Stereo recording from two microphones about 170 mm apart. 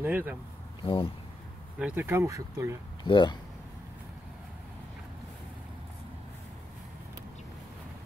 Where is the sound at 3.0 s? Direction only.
25° left (ahead or behind).